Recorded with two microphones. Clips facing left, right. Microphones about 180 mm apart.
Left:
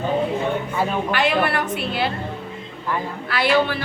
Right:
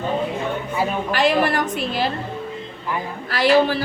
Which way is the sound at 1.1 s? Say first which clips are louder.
Right 4 dB; 40° right (ahead or behind).